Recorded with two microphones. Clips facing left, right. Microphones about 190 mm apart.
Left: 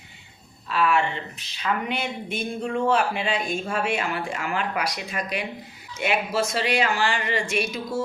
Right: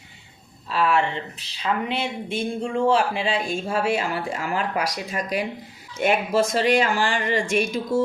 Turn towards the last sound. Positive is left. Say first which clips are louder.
# right 4 dB
turn(degrees=-50)  # may be behind; listen again after turning